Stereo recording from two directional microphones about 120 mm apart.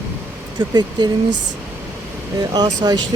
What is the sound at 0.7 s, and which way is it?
Speech, 35° right (ahead or behind).